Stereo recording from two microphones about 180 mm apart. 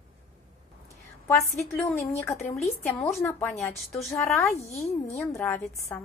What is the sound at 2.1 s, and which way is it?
A woman's voice, 15° left (ahead or behind).